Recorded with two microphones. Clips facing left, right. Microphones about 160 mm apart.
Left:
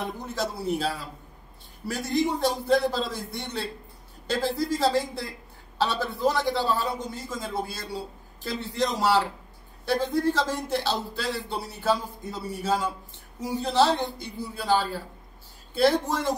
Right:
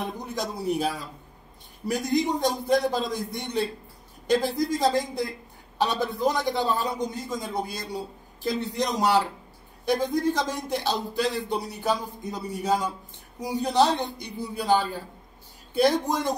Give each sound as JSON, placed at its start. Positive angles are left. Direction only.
{"t": 0.0, "sound": "a man's voice", "side_deg": -15}